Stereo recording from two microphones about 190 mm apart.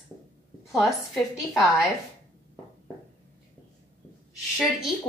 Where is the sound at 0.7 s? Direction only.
Centre (ahead or behind).